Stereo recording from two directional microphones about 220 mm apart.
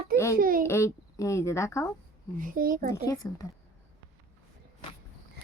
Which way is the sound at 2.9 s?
15° left (ahead or behind).